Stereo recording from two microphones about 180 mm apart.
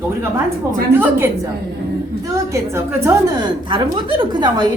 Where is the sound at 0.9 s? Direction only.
10° right (ahead or behind).